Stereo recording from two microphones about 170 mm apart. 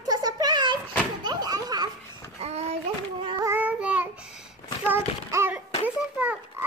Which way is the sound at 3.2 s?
25° right (ahead or behind).